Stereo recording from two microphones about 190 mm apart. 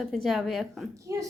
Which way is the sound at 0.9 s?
15° right (ahead or behind).